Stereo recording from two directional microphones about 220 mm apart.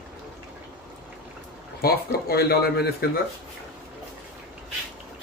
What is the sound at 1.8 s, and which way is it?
Speech, 45° left (ahead or behind).